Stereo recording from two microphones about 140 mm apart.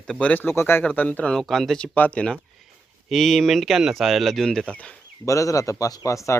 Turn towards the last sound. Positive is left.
turn(degrees=20)  # may be behind; listen again after turning